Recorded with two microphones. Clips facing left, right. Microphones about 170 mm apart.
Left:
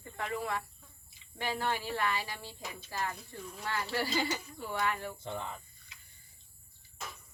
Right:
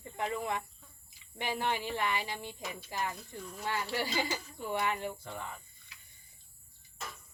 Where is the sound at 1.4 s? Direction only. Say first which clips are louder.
Even; 20° right (ahead or behind).